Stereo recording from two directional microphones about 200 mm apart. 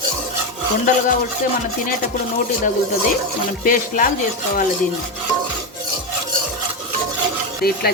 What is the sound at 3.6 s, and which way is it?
Speech, 45° left (ahead or behind).